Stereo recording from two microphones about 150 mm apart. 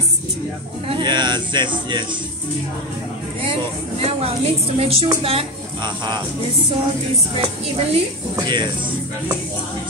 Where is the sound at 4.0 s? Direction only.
40° right (ahead or behind).